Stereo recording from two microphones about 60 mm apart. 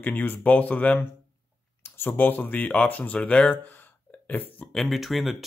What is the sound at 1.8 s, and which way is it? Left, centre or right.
Speech, left.